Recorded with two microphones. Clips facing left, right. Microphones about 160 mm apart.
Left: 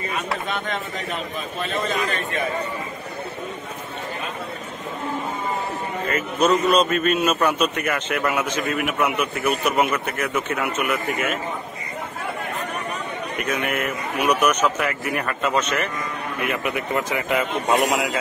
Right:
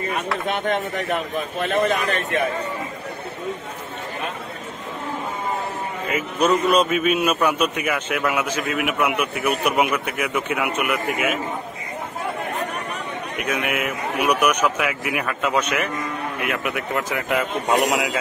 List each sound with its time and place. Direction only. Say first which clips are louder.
0.5 s a man's voice: right 5 dB; 60° right (ahead or behind)
6.0 s a man's voice: even; 10° right (ahead or behind)
13.4 s a man's voice: even; 5° right (ahead or behind)